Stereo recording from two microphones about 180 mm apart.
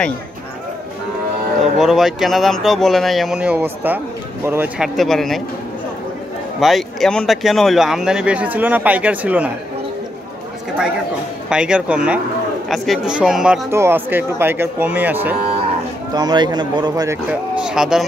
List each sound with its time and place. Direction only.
1.6 s speech: centre (ahead or behind)
6.6 s speech: centre (ahead or behind)
11.4 s speech: 5° right (ahead or behind)
13.7 s speech: 15° right (ahead or behind)
16.2 s speech: 25° right (ahead or behind)
17.3 s speech: 5° right (ahead or behind)